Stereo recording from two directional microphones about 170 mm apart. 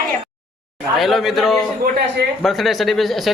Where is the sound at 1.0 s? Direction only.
Centre (ahead or behind).